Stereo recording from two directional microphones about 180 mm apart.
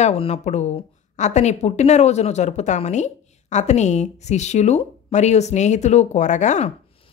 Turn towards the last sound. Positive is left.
turn(degrees=40)  # may be behind; listen again after turning